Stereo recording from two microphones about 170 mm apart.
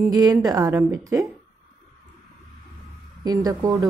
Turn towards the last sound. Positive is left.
turn(degrees=-20)  # may be behind; listen again after turning